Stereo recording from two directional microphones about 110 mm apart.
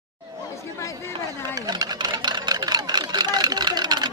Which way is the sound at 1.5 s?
40° right (ahead or behind).